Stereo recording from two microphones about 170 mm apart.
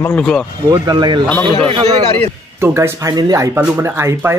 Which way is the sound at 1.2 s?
10° left (ahead or behind).